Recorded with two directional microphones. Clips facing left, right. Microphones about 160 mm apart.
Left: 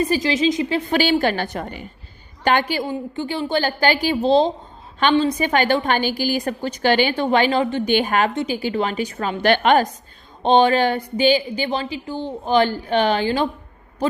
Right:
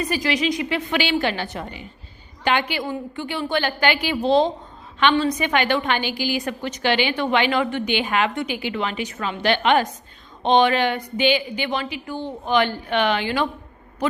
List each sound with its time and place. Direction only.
0.0 s a woman's voice: 30° left (ahead or behind)
2.8 s a woman's voice: 30° left (ahead or behind)
8.3 s a woman's voice: 30° left (ahead or behind)
9.4 s a woman's voice: 45° left (ahead or behind)